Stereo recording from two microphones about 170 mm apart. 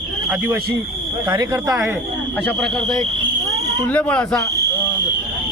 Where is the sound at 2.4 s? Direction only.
5° left (ahead or behind).